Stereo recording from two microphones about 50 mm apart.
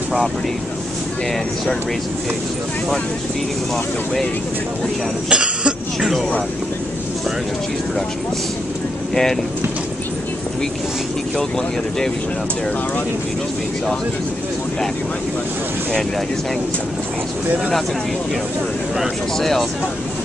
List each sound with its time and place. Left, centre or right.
3.7 s speech: centre
5.3 s cough: centre
5.9 s speech: centre
9.1 s speech: centre
11.3 s speech: centre
19.3 s speech: centre